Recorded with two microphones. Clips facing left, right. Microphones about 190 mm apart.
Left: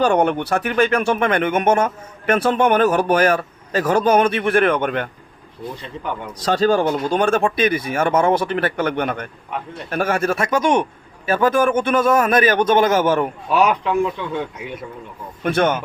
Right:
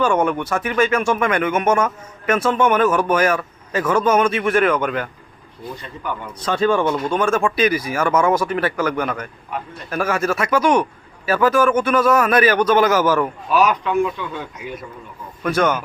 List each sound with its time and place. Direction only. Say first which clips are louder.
0.0 s a man's voice: left 1 dB; 35° left (ahead or behind)
0.6 s speech: even; 60° left (ahead or behind)
0.9 s a man's voice: left 1 dB; 30° left (ahead or behind)
6.1 s a man's voice: left 2 dB; 35° left (ahead or behind)